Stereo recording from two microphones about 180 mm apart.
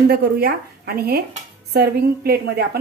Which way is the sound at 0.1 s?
65° right (ahead or behind).